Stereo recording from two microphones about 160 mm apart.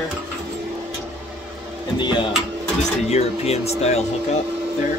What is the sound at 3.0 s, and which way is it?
Speech, 40° left (ahead or behind).